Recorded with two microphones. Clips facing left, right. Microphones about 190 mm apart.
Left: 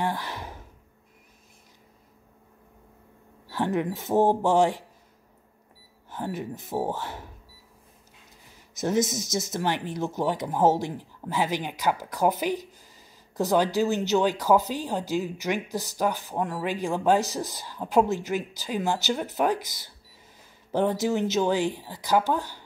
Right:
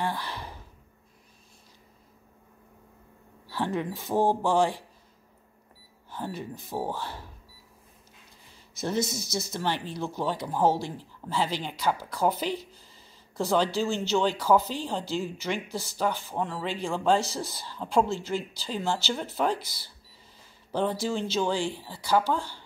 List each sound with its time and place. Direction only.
0.0 s a sound: 15° left (ahead or behind)
3.4 s speech: 20° left (ahead or behind)
6.0 s speech: 20° left (ahead or behind)
8.8 s speech: 20° left (ahead or behind)